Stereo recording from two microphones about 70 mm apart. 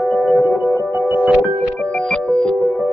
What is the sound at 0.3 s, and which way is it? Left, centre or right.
Music, centre.